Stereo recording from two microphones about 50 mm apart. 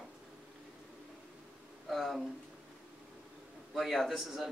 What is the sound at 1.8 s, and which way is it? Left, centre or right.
Speech, centre.